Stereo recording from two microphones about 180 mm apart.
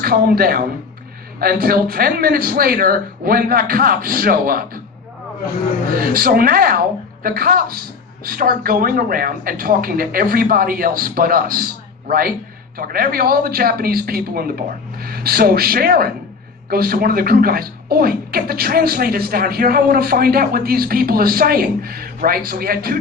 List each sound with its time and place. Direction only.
0.0 s speech: 55° right (ahead or behind)
6.0 s speech: 55° right (ahead or behind)